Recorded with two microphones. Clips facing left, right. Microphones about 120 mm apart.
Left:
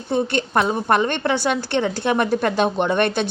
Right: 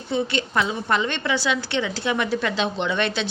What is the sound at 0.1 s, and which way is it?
A woman's voice, 50° left (ahead or behind).